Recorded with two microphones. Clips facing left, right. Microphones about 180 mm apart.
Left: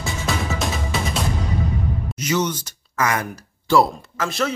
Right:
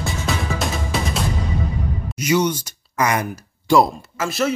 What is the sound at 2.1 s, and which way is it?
Speech, 10° right (ahead or behind).